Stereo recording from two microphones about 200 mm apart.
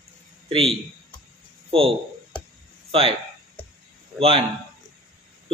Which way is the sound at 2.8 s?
30° right (ahead or behind).